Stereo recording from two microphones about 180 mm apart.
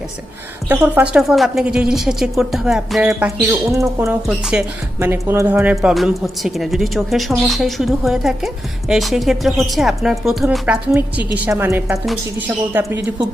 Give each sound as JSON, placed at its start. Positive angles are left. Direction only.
{"t": 0.7, "sound": "speech", "side_deg": -10}
{"t": 3.6, "sound": "speech", "side_deg": -15}
{"t": 4.3, "sound": "speech", "side_deg": -5}
{"t": 4.9, "sound": "speech", "side_deg": -15}